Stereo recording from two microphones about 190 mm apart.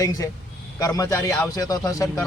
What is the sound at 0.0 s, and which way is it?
A man's voice, 20° left (ahead or behind).